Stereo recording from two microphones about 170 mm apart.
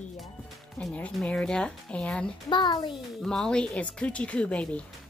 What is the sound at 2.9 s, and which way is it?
A woman's voice, 5° left (ahead or behind).